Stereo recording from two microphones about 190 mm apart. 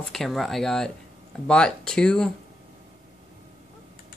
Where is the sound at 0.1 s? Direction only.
Centre (ahead or behind).